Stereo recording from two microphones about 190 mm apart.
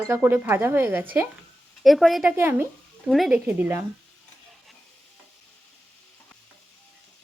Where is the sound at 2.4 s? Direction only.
10° right (ahead or behind).